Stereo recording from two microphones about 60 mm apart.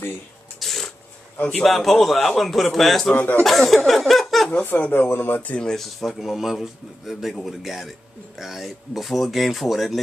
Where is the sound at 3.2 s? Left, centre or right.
Left.